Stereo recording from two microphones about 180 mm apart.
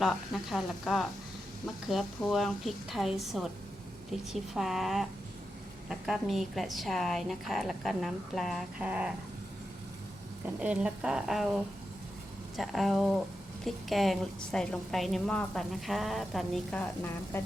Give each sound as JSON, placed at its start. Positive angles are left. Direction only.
{"t": 0.0, "sound": "a woman's voice", "side_deg": 0}
{"t": 10.4, "sound": "a woman's voice", "side_deg": -10}